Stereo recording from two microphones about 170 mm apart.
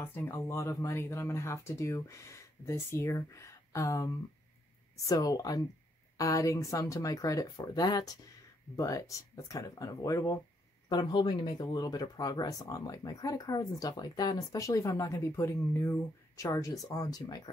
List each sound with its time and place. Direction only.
0.0 s speech: 10° left (ahead or behind)